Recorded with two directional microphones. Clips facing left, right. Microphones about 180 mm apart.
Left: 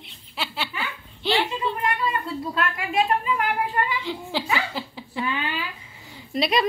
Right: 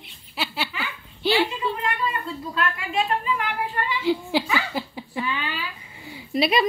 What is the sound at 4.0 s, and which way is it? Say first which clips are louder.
Speech: right 6 dB; 10° right (ahead or behind).